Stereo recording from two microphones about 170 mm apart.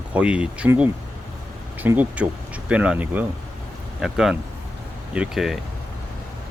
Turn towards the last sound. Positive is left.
turn(degrees=0)  # may be behind; listen again after turning